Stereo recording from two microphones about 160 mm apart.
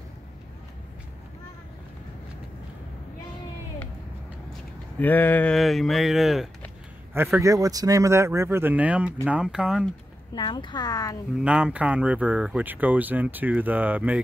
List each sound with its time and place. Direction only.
4.9 s speech: 10° left (ahead or behind)
7.2 s speech: 20° right (ahead or behind)
10.3 s speech: 30° left (ahead or behind)
11.3 s speech: 5° right (ahead or behind)